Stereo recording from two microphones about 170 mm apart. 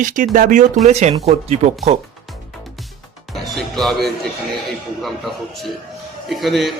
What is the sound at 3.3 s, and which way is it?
Music, centre (ahead or behind).